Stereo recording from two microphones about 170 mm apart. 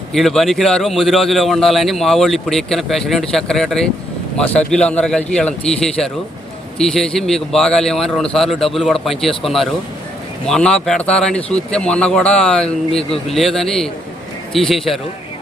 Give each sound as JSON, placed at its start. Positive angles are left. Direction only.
{"t": 0.1, "sound": "speech", "side_deg": 0}
{"t": 12.9, "sound": "speech", "side_deg": 35}
{"t": 13.3, "sound": "speech", "side_deg": 0}